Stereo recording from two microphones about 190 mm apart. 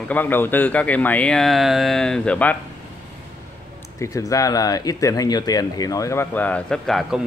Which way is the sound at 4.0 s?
15° left (ahead or behind).